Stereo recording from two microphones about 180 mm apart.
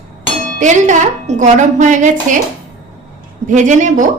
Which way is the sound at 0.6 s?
45° right (ahead or behind).